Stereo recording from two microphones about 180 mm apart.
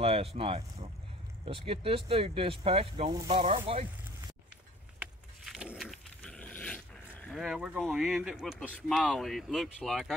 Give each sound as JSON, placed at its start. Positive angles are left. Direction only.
{"t": 0.0, "sound": "speech", "side_deg": -35}
{"t": 4.9, "sound": "dog", "side_deg": -5}